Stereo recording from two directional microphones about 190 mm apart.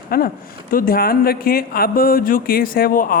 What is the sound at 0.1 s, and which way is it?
Speech, 50° left (ahead or behind).